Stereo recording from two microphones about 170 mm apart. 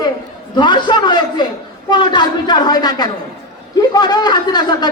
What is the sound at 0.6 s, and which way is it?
A man's voice, 25° left (ahead or behind).